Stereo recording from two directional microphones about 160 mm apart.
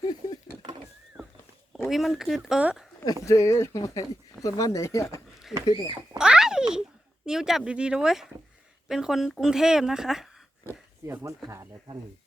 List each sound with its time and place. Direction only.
0.0 s a sound: 25° left (ahead or behind)
1.9 s speech: centre (ahead or behind)
3.2 s speech: 20° left (ahead or behind)
5.5 s speech: 5° right (ahead or behind)
6.1 s a sound: 5° right (ahead or behind)
7.3 s speech: 5° right (ahead or behind)
11.0 s speech: 20° right (ahead or behind)